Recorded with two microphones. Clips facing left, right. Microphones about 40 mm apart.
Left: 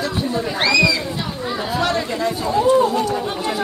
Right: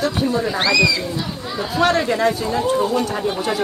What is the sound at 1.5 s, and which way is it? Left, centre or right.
Speech, centre.